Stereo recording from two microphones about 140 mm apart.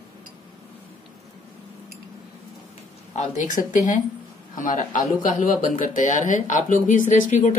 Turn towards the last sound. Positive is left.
turn(degrees=60)  # may be behind; listen again after turning